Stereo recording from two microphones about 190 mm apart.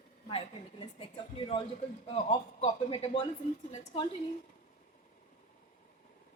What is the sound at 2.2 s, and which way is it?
A woman's voice, 30° left (ahead or behind).